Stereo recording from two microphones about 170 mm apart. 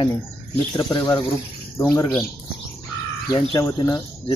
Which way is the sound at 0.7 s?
20° left (ahead or behind).